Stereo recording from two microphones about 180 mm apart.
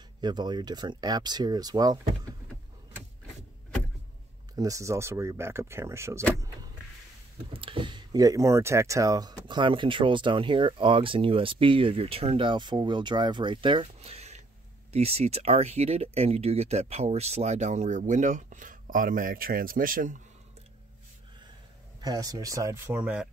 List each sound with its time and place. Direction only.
0.2 s speech: 25° right (ahead or behind)
4.6 s speech: 20° right (ahead or behind)
7.5 s speech: 30° right (ahead or behind); by 20.2 s 50° right (ahead or behind)
22.0 s speech: 20° right (ahead or behind)